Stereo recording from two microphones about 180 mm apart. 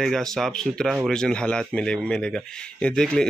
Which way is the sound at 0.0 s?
5° left (ahead or behind).